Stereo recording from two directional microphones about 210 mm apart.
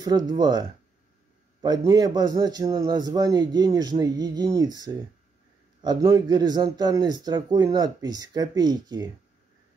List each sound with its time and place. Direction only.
0.0 s a man's voice: 20° right (ahead or behind)